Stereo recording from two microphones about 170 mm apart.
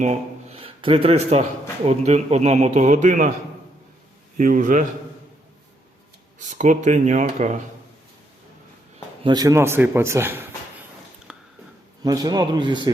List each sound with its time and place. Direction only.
0.0 s speech: 40° right (ahead or behind)
4.4 s speech: 50° right (ahead or behind)
6.5 s speech: 45° right (ahead or behind)
9.2 s speech: 25° right (ahead or behind)
11.3 s a sound: 5° right (ahead or behind)
12.0 s a man's voice: 20° right (ahead or behind)